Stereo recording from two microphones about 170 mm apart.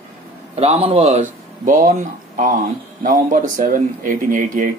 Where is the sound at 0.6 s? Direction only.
35° right (ahead or behind).